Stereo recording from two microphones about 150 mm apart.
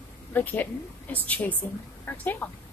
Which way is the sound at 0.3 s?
10° left (ahead or behind).